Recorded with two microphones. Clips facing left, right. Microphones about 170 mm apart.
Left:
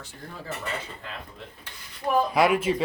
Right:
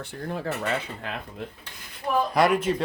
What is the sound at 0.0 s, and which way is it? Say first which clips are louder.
Cutlery: right 9 dB; 65° right (ahead or behind).